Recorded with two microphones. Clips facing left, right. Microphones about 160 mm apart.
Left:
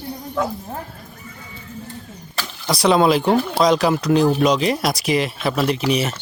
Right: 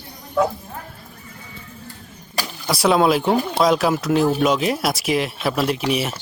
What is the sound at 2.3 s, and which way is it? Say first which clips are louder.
Speech: even; 5° right (ahead or behind).